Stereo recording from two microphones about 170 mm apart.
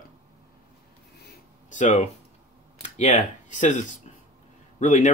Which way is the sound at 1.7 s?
45° left (ahead or behind).